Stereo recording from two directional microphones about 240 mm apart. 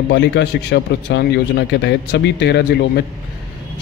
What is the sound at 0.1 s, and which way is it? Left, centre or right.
Speech, left.